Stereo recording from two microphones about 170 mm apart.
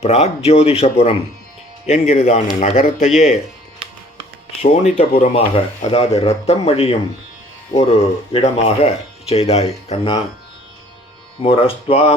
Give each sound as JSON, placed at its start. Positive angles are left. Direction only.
{"t": 0.0, "sound": "speech", "side_deg": 40}
{"t": 4.6, "sound": "speech", "side_deg": 40}
{"t": 11.3, "sound": "speech", "side_deg": 35}